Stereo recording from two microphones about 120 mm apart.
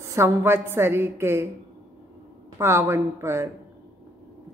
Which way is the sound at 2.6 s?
20° right (ahead or behind).